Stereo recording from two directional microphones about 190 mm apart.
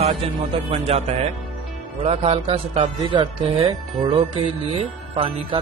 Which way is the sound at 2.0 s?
35° right (ahead or behind).